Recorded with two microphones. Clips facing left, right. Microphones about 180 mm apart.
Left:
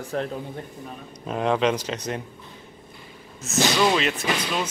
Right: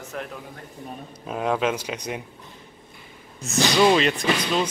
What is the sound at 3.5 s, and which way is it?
Speech, 15° right (ahead or behind).